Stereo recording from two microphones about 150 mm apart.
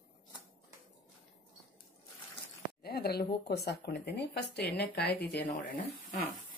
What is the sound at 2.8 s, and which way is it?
Speech, 90° left.